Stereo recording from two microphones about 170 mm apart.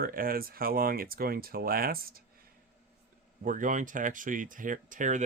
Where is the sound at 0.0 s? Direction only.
55° right (ahead or behind).